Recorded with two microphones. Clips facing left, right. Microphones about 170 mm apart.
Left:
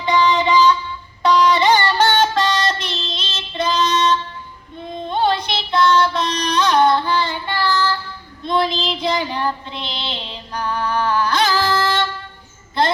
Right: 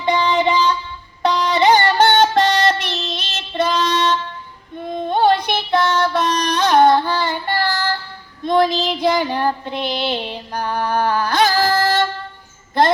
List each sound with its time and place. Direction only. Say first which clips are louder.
0.0 s music: even; 55° right (ahead or behind)
1.8 s child singing: right 2 dB; 55° right (ahead or behind)